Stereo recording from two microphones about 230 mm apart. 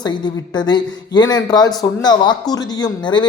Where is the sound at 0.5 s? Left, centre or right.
Centre.